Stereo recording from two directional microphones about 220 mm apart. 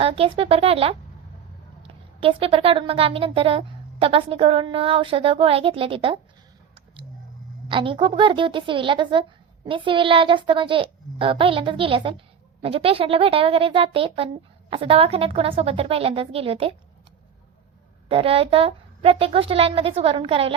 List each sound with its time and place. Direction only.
0.0 s a woman's voice: 25° right (ahead or behind)
2.2 s a woman's voice: 25° right (ahead or behind)
7.7 s a woman's voice: 20° right (ahead or behind)
18.1 s a woman's voice: 25° right (ahead or behind)